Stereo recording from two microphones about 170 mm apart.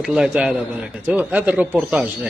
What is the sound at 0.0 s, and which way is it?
A man's voice, 5° right (ahead or behind).